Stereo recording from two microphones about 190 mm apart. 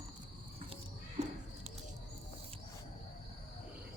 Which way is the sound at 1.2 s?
35° right (ahead or behind).